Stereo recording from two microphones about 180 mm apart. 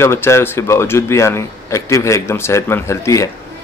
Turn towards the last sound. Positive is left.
turn(degrees=15)  # may be behind; listen again after turning